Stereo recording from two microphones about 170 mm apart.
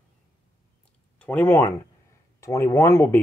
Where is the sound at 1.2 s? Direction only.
10° left (ahead or behind).